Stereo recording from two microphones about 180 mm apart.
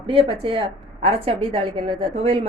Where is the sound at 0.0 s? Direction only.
30° right (ahead or behind).